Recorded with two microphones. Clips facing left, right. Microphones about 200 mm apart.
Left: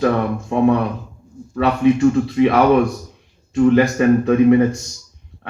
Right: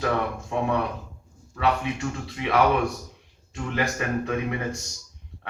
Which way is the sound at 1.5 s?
40° left (ahead or behind).